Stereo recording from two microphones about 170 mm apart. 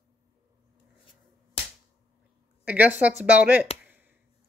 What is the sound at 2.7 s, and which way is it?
Speech, 10° right (ahead or behind).